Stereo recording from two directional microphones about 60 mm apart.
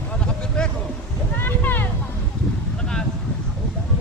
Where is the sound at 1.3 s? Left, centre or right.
Left.